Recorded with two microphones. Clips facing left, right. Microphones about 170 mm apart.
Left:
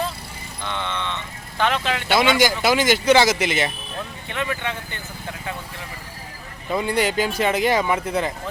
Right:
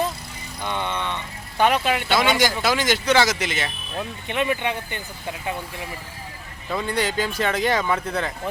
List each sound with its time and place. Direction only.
0.6 s a sound: 15° right (ahead or behind)
2.4 s speech: 5° left (ahead or behind)
4.3 s speech: 20° right (ahead or behind)
6.7 s speech: 15° left (ahead or behind)